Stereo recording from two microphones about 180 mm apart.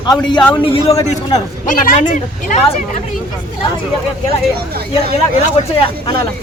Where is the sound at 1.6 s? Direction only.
45° left (ahead or behind).